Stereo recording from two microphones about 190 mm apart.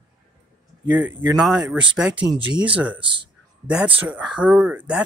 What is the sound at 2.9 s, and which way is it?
Speech, 25° right (ahead or behind).